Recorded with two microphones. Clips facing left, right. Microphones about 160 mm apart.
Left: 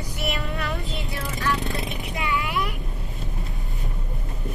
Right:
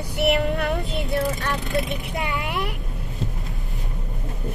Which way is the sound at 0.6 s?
50° right (ahead or behind).